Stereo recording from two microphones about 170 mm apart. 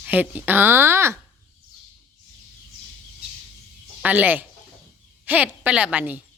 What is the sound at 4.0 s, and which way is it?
A woman's voice, 10° right (ahead or behind).